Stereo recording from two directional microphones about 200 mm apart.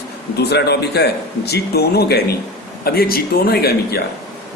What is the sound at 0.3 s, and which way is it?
Speech, 55° left (ahead or behind).